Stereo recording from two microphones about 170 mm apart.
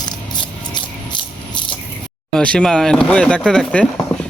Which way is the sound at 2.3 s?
5° left (ahead or behind).